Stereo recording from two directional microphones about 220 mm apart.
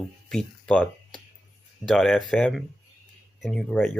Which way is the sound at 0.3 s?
5° left (ahead or behind).